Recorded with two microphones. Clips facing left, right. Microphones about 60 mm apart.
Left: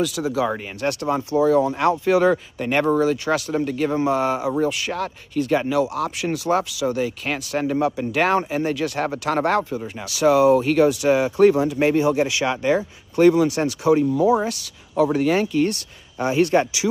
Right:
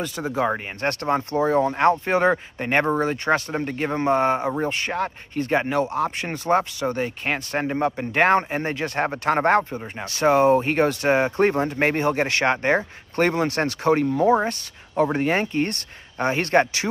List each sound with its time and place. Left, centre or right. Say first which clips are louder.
0.2 s speech: left 4 dB; right
0.8 s speech: even; right
4.9 s speech: even; right
5.4 s speech: left 2 dB; right
10.0 s speech: left 2 dB; right